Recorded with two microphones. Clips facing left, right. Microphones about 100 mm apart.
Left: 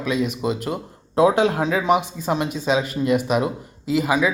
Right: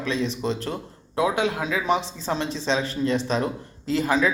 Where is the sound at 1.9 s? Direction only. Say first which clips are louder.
Left 3 dB; 15° left (ahead or behind).